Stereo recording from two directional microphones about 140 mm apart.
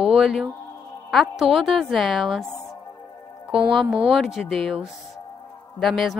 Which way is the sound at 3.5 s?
Centre (ahead or behind).